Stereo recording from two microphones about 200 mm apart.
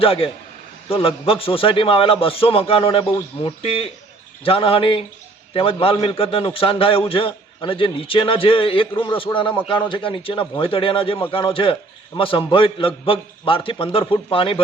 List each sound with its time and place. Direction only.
0.0 s a man's voice: 30° left (ahead or behind)